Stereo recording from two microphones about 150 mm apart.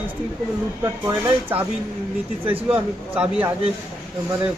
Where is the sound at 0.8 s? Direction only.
20° right (ahead or behind).